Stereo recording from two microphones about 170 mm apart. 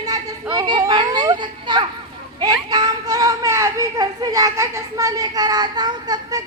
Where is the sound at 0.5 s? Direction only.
25° right (ahead or behind).